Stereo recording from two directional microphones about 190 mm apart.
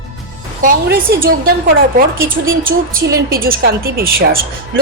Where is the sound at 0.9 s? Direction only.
50° right (ahead or behind).